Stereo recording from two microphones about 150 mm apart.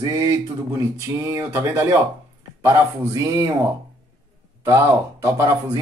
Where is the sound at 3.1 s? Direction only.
20° right (ahead or behind).